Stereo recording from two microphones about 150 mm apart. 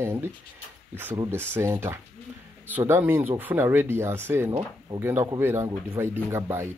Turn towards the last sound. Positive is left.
turn(degrees=-20)  # may be behind; listen again after turning